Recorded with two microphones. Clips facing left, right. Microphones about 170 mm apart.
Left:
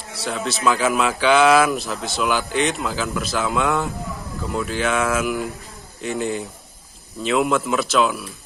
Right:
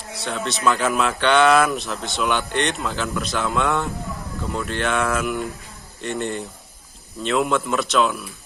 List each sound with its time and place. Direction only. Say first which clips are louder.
0.1 s speech: left 1 dB; centre (ahead or behind)